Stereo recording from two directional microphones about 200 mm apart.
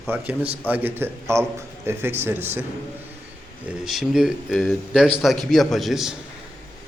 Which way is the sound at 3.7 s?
Centre (ahead or behind).